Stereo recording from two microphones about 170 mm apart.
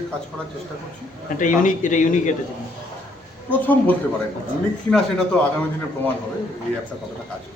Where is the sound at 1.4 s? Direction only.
50° left (ahead or behind).